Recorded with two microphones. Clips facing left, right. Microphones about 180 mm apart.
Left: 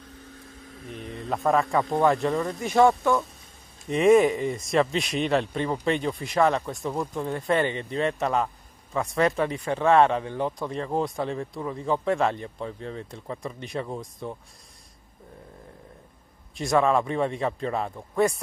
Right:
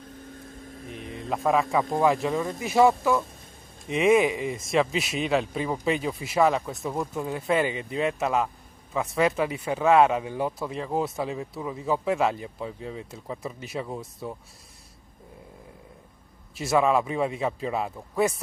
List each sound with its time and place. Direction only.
0.2 s a sound: 50° right (ahead or behind)
1.3 s speech: centre (ahead or behind)
16.5 s speech: 5° right (ahead or behind)